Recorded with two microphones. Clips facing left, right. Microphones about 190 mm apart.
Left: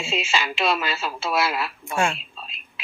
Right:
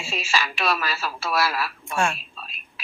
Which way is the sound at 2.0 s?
25° left (ahead or behind).